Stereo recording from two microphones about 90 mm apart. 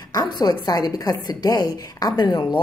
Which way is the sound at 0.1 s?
50° left (ahead or behind).